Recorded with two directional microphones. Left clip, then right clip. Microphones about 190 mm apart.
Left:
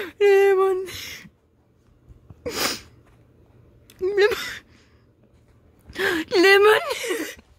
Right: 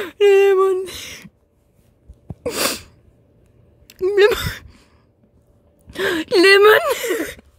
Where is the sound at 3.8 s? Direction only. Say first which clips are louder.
Right 5 dB; 25° right (ahead or behind).